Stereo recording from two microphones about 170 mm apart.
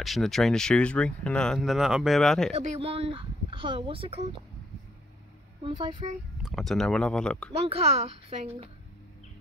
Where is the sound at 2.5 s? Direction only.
35° right (ahead or behind).